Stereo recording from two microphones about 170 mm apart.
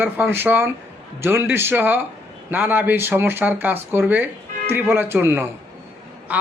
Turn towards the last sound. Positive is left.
turn(degrees=-10)  # may be behind; listen again after turning